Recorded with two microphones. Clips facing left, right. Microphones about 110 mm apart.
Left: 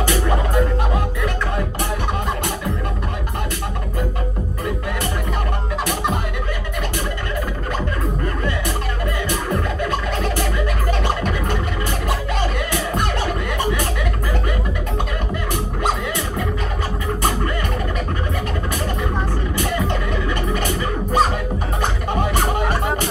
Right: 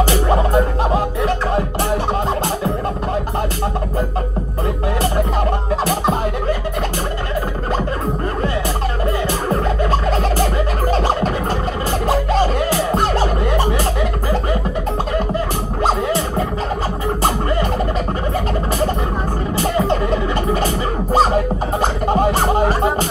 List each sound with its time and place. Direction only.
0.0 s music: 30° right (ahead or behind)
9.5 s music: 35° right (ahead or behind)
15.8 s music: 30° right (ahead or behind)
19.6 s music: 30° right (ahead or behind)